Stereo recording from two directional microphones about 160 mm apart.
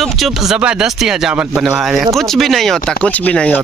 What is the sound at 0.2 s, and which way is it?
Speech, 5° right (ahead or behind).